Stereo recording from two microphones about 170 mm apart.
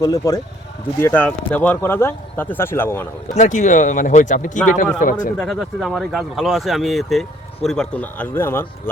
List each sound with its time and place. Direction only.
0.0 s speech: 20° left (ahead or behind)
3.3 s speech: 45° left (ahead or behind)
5.4 s speech: centre (ahead or behind)